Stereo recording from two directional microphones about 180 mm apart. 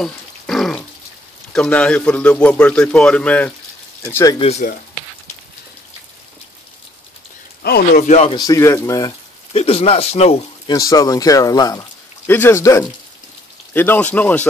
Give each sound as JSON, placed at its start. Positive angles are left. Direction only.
{"t": 0.0, "sound": "a sound", "side_deg": 0}
{"t": 1.5, "sound": "a man's voice", "side_deg": 5}
{"t": 4.0, "sound": "a man's voice", "side_deg": 15}
{"t": 4.4, "sound": "speech", "side_deg": 35}
{"t": 7.6, "sound": "speech", "side_deg": 60}
{"t": 8.0, "sound": "speech", "side_deg": 40}
{"t": 8.4, "sound": "speech", "side_deg": 15}
{"t": 9.5, "sound": "speech", "side_deg": 35}
{"t": 10.7, "sound": "a man's voice", "side_deg": 20}